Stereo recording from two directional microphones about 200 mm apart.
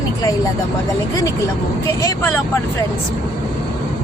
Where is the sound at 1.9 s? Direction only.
15° left (ahead or behind).